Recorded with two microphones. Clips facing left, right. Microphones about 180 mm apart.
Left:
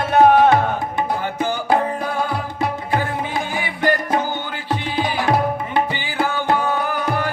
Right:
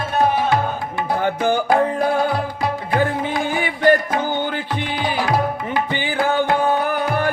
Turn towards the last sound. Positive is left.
turn(degrees=-55)  # may be behind; listen again after turning